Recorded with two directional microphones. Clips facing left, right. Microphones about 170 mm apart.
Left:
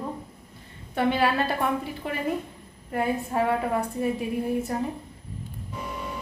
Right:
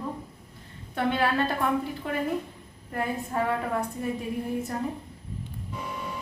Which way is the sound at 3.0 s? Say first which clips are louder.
Left 3 dB; 10° left (ahead or behind).